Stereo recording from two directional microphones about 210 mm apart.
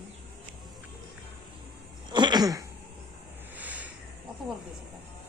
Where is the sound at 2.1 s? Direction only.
20° right (ahead or behind).